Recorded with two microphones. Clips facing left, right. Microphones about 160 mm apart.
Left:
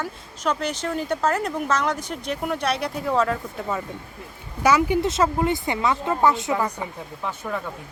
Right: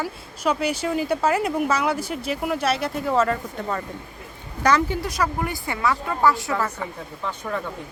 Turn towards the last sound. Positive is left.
turn(degrees=10)  # may be behind; listen again after turning